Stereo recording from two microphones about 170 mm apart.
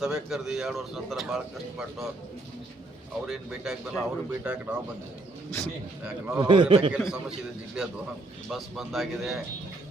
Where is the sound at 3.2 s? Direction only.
5° right (ahead or behind).